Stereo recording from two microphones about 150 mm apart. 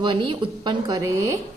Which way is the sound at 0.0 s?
30° right (ahead or behind).